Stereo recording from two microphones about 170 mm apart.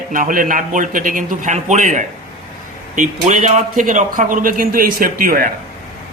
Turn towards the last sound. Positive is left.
turn(degrees=-55)  # may be behind; listen again after turning